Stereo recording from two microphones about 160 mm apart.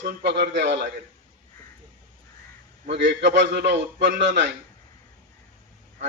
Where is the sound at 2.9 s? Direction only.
90° right.